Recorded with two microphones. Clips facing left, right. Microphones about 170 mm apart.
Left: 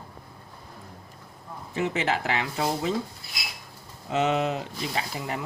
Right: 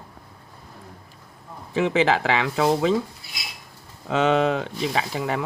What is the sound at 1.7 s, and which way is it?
Speech, 90° right.